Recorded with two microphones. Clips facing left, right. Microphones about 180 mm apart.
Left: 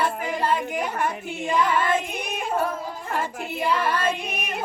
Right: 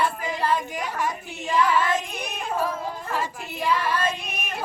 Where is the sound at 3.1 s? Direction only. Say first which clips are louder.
Left 4 dB; 55° left (ahead or behind).